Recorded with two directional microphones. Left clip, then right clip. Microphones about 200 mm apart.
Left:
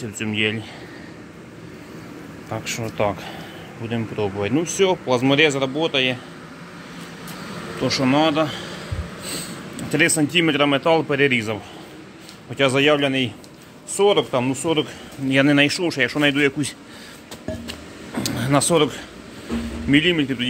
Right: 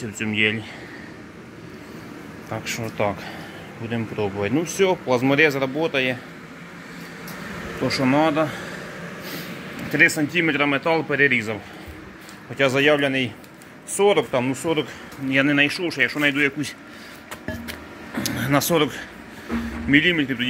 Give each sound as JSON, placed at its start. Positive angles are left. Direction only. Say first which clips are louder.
{"t": 0.0, "sound": "speech", "louder": "right 1 dB", "side_deg": 5}
{"t": 2.5, "sound": "speech", "louder": "left 1 dB", "side_deg": 10}
{"t": 7.8, "sound": "speech", "louder": "left 1 dB", "side_deg": -5}
{"t": 9.9, "sound": "speech", "louder": "even", "side_deg": 15}
{"t": 15.2, "sound": "speech", "louder": "left 2 dB", "side_deg": 25}
{"t": 18.1, "sound": "a sound", "louder": "left 1 dB", "side_deg": 5}
{"t": 19.9, "sound": "speech", "louder": "even", "side_deg": 10}